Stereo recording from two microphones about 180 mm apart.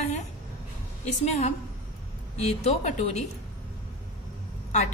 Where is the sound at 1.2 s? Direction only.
35° left (ahead or behind).